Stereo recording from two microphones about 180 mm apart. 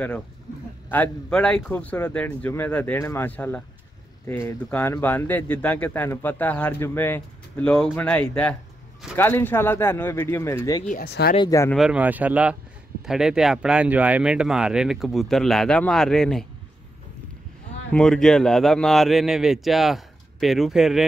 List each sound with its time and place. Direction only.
0.8 s speech: 10° left (ahead or behind)
10.9 s speech: 55° left (ahead or behind)
11.3 s speech: 20° left (ahead or behind)
11.7 s speech: 5° right (ahead or behind)
17.9 s speech: 5° left (ahead or behind)